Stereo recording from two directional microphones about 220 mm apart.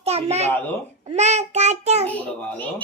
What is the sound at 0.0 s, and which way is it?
Speech, 30° right (ahead or behind).